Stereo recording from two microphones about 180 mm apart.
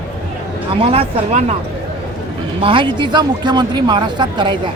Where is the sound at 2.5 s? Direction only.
30° right (ahead or behind).